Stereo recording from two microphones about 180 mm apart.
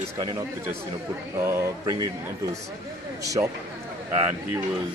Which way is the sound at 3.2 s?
15° right (ahead or behind).